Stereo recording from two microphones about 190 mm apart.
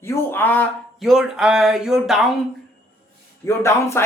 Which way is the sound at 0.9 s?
Centre (ahead or behind).